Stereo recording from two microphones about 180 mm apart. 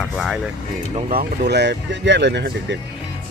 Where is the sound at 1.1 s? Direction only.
55° right (ahead or behind).